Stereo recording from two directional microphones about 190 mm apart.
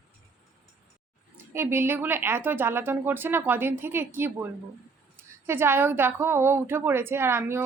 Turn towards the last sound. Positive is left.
turn(degrees=-15)  # may be behind; listen again after turning